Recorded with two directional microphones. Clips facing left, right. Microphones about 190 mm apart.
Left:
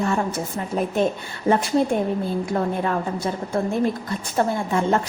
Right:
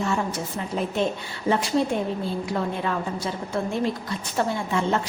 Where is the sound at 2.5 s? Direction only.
45° left (ahead or behind).